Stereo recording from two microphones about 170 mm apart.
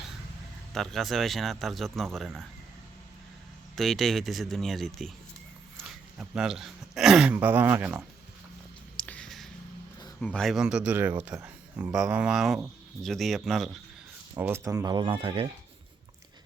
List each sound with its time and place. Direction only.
0.7 s speech: centre (ahead or behind)
3.8 s speech: centre (ahead or behind)
6.1 s speech: 5° right (ahead or behind)
9.0 s a sound: 5° left (ahead or behind)
10.2 s speech: 5° left (ahead or behind)
14.3 s speech: 15° right (ahead or behind); by 15.4 s 30° right (ahead or behind)